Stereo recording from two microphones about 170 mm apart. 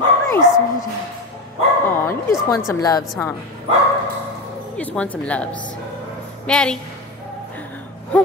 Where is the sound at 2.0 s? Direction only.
15° left (ahead or behind).